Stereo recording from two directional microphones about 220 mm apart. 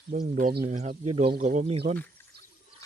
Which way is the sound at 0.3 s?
40° right (ahead or behind).